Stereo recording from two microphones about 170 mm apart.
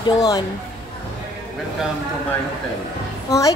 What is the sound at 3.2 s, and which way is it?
Speech, 20° left (ahead or behind).